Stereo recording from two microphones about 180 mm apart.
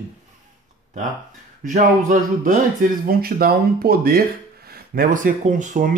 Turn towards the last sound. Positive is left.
turn(degrees=-45)  # may be behind; listen again after turning